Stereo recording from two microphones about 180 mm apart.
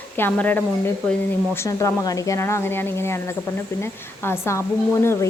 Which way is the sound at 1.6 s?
20° left (ahead or behind).